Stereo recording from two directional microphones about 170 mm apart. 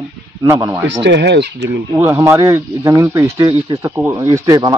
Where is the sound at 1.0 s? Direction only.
90° right.